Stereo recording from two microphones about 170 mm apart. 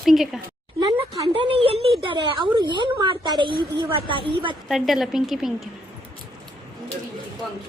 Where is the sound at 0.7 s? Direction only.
30° right (ahead or behind).